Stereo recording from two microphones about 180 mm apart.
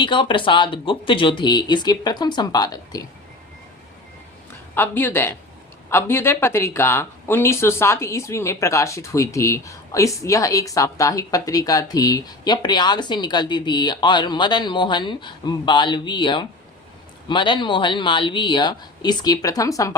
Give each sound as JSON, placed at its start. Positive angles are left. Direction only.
{"t": 0.0, "sound": "speech", "side_deg": 25}
{"t": 4.7, "sound": "a woman's voice", "side_deg": 10}